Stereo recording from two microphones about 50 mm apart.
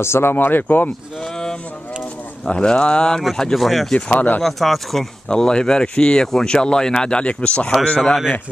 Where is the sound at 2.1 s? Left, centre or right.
Left.